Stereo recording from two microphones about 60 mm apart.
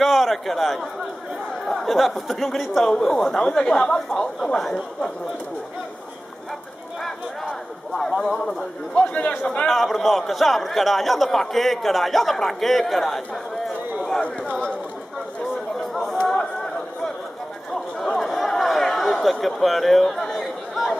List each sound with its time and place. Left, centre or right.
0.0 s a man's voice: centre
7.0 s a man's voice: centre
9.1 s a man's voice: left
9.7 s a man's voice: centre
15.7 s a sound: centre